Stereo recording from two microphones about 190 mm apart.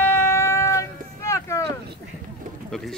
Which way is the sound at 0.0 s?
10° left (ahead or behind).